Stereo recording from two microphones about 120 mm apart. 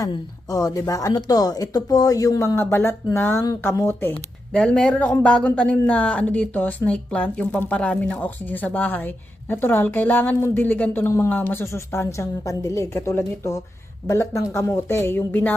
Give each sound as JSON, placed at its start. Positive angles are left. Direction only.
{"t": 0.0, "sound": "a woman's voice", "side_deg": 30}